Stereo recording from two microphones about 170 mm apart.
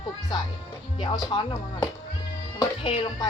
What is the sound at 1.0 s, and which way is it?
Speech, 25° left (ahead or behind).